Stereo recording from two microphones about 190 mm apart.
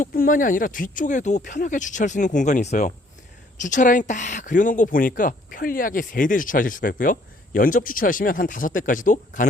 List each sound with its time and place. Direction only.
0.0 s speech: 45° left (ahead or behind)